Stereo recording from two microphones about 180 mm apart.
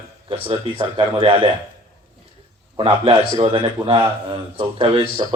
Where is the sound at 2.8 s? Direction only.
30° right (ahead or behind).